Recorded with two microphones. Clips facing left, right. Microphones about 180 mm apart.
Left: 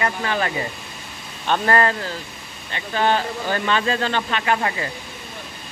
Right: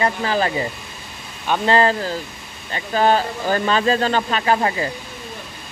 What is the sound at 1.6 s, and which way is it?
Speech, 25° right (ahead or behind).